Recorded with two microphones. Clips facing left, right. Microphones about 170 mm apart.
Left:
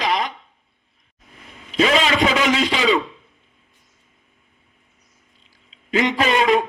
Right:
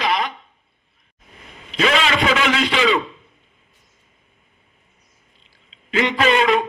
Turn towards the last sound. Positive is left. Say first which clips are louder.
# even
turn(degrees=40)  # may be behind; listen again after turning